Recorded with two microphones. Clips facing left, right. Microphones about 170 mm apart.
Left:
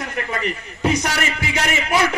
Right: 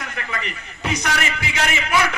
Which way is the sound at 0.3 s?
40° left (ahead or behind).